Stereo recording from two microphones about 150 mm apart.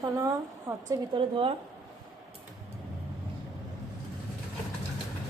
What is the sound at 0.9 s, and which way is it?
Speech, 35° right (ahead or behind).